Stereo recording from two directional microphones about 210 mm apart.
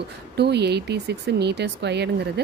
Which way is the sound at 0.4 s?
50° right (ahead or behind).